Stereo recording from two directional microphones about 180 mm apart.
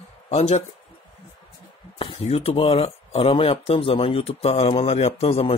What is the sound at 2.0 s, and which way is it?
Speech, 30° left (ahead or behind).